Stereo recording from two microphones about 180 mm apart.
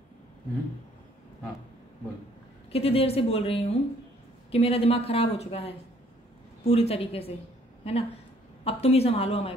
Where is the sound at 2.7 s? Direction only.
35° left (ahead or behind).